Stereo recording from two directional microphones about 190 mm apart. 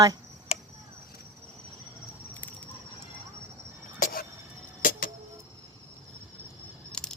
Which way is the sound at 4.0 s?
50° left (ahead or behind).